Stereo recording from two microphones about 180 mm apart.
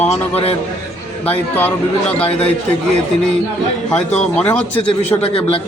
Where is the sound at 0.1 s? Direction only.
35° left (ahead or behind).